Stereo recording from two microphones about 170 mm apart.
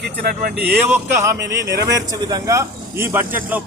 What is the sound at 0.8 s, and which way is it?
A man's voice, 15° right (ahead or behind).